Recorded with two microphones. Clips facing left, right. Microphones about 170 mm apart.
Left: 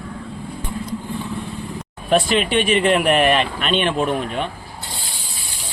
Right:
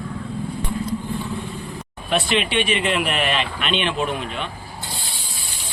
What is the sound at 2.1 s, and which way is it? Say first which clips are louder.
Speech: left 4 dB; 45° left (ahead or behind).